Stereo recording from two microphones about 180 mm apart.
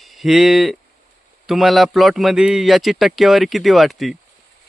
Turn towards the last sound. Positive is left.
turn(degrees=0)  # may be behind; listen again after turning